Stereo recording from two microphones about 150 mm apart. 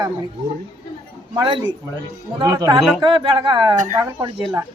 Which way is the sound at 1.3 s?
30° right (ahead or behind).